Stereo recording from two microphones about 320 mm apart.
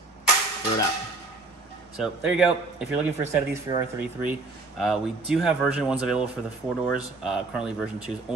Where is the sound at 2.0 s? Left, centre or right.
Centre.